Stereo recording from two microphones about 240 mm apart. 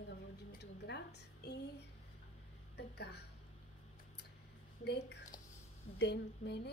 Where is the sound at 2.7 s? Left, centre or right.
Left.